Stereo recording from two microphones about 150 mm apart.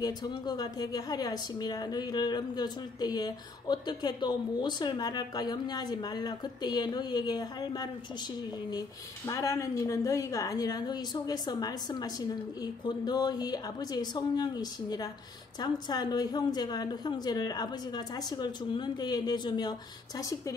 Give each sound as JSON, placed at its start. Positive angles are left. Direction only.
{"t": 0.0, "sound": "a woman's voice", "side_deg": 25}